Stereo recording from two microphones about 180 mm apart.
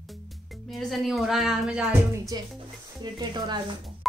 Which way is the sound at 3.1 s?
25° right (ahead or behind).